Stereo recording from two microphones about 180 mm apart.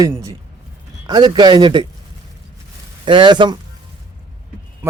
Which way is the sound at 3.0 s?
25° right (ahead or behind).